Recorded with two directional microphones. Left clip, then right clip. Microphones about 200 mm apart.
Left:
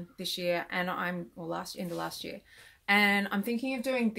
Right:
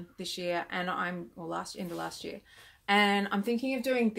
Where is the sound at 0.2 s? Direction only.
5° left (ahead or behind).